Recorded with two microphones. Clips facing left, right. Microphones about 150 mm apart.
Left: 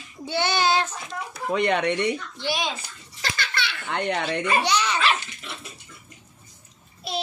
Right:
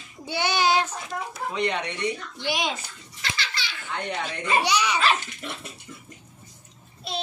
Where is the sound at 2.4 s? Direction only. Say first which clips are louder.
Even; 15° right (ahead or behind).